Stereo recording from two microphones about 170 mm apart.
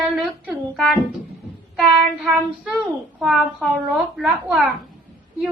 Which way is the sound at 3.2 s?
Centre (ahead or behind).